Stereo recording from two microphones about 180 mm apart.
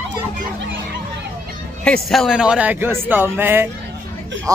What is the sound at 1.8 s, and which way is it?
A man's voice, 5° left (ahead or behind).